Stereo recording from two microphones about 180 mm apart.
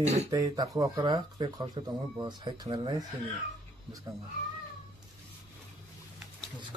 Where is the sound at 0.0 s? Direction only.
40° right (ahead or behind).